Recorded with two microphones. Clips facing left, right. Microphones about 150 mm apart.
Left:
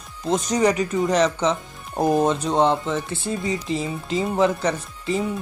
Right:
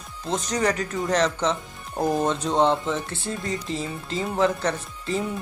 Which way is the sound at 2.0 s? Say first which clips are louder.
Left 4 dB; 20° left (ahead or behind).